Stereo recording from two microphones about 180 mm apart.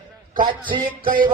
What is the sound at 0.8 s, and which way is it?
Music, 55° right (ahead or behind).